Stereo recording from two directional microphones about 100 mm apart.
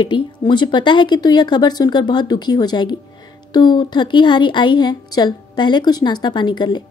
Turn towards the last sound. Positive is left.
turn(degrees=50)  # may be behind; listen again after turning